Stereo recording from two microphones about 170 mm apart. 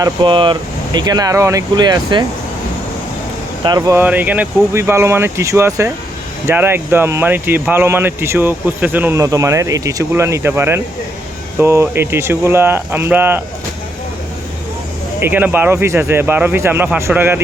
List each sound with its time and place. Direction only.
0.0 s speech: 25° right (ahead or behind)
3.6 s speech: 20° right (ahead or behind)
15.2 s speech: 10° right (ahead or behind)